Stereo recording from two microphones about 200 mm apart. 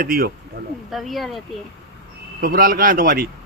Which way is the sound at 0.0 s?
45° right (ahead or behind).